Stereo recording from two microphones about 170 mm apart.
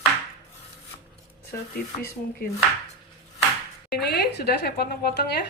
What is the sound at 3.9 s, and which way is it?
Speech, 70° left (ahead or behind).